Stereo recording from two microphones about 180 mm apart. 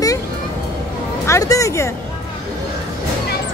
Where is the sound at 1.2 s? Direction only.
15° left (ahead or behind).